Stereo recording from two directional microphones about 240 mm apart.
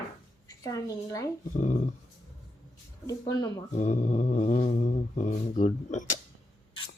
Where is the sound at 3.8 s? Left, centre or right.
Left.